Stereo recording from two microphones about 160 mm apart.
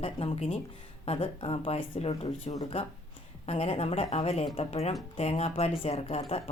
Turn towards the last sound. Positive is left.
turn(degrees=40)  # may be behind; listen again after turning